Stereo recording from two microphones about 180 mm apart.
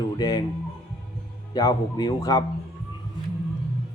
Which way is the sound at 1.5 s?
20° left (ahead or behind).